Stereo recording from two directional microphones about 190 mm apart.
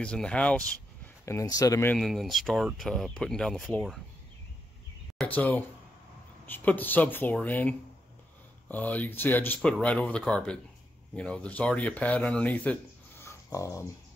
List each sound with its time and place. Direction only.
0.0 s speech: 5° left (ahead or behind)
1.2 s speech: 15° left (ahead or behind)
2.0 s speech: centre (ahead or behind)
5.1 s speech: 5° left (ahead or behind)
13.2 s a sound: 15° left (ahead or behind)